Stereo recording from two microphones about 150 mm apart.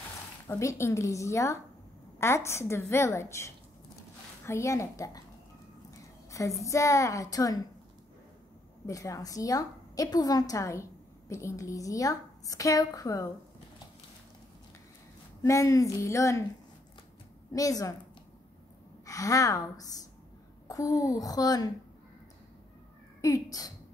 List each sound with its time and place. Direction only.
0.5 s a woman's voice: 20° left (ahead or behind)
6.6 s a woman's voice: 20° left (ahead or behind)
8.8 s a woman's voice: 20° left (ahead or behind)
15.4 s a woman's voice: 20° left (ahead or behind)
17.5 s a woman's voice: 20° left (ahead or behind)
19.0 s a woman's voice: 20° left (ahead or behind)
23.2 s a woman's voice: 25° left (ahead or behind)